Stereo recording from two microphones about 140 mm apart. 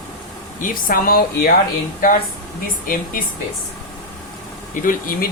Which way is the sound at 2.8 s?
85° left.